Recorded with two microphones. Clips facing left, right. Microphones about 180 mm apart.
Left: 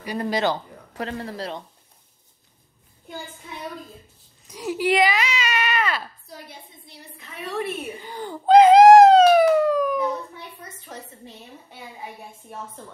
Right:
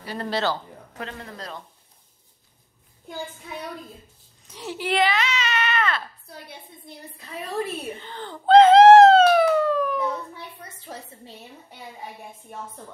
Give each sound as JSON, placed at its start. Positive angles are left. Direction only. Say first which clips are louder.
{"t": 0.0, "sound": "speech", "louder": "left 3 dB", "side_deg": 15}
{"t": 0.9, "sound": "a man's voice", "louder": "left 6 dB", "side_deg": 35}
{"t": 4.5, "sound": "speech", "louder": "left 5 dB", "side_deg": 10}
{"t": 7.2, "sound": "a woman's voice", "louder": "even", "side_deg": -35}
{"t": 8.0, "sound": "baby cry", "louder": "left 4 dB", "side_deg": 10}
{"t": 10.9, "sound": "a woman's voice", "louder": "right 1 dB", "side_deg": -30}